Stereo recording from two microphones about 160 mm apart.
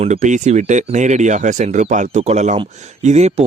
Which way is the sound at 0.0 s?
50° right (ahead or behind).